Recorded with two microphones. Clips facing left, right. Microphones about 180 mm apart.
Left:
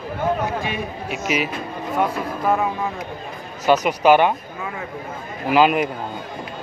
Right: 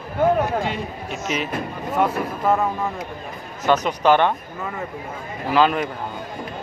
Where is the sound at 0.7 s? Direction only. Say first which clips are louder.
Left 2 dB; 10° left (ahead or behind).